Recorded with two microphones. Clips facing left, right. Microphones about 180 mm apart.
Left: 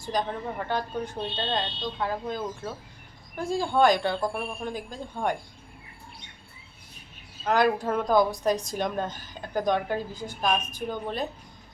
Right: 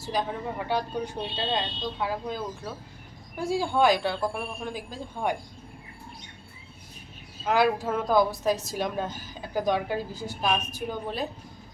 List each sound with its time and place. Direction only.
0.0 s speech: 5° right (ahead or behind)
7.4 s a woman's voice: 5° right (ahead or behind)